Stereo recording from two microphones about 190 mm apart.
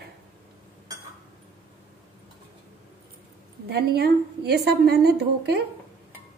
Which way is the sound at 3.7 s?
60° right (ahead or behind).